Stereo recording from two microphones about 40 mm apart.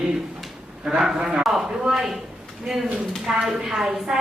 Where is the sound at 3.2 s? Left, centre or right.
Centre.